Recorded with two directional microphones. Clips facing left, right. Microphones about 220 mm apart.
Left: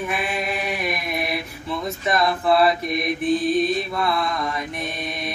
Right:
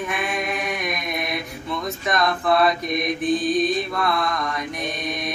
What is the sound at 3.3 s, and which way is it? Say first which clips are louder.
Mantra: left 1 dB; 25° left (ahead or behind).